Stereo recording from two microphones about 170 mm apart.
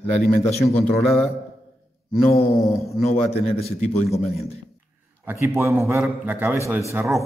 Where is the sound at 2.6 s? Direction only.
Centre (ahead or behind).